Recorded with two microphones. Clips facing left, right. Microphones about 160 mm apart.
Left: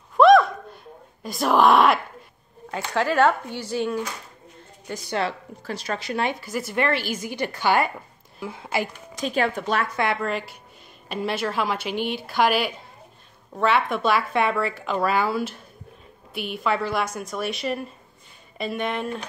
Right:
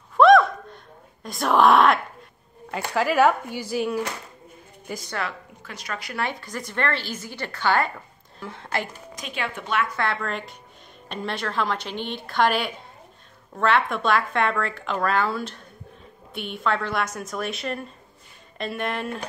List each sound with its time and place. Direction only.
0.2 s a sound: centre (ahead or behind)
1.2 s speech: centre (ahead or behind)
5.1 s speech: 30° left (ahead or behind)
6.4 s a woman's voice: 5° left (ahead or behind)
9.1 s speech: 35° left (ahead or behind)
10.2 s a woman's voice: 5° left (ahead or behind)